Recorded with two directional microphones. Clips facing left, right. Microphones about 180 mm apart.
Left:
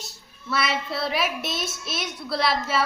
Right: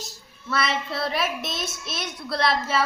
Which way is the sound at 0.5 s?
Centre (ahead or behind).